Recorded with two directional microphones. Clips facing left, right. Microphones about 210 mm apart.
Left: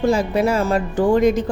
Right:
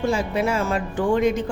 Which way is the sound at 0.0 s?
40° left (ahead or behind).